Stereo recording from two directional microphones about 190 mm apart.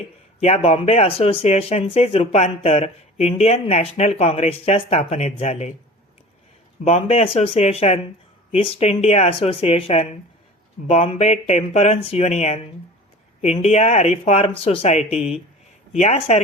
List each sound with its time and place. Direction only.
0.3 s speech: 30° left (ahead or behind)
6.8 s speech: 35° left (ahead or behind)